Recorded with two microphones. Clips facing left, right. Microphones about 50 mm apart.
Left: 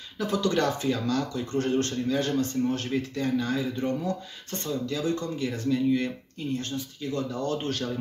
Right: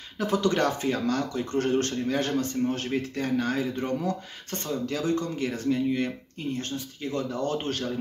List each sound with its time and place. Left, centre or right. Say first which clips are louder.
0.2 s speech: right 1 dB; right
3.3 s speech: right 3 dB; right
5.7 s speech: left 2 dB; right